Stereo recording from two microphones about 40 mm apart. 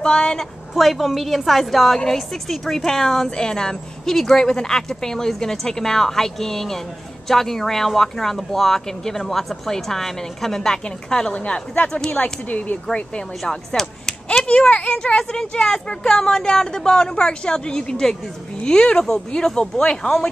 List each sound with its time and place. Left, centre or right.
0.0 s a child's voice: left
0.7 s a woman's voice: centre; by 11.6 s left
12.1 s speech: left
13.5 s speech: centre
14.5 s a child's voice: left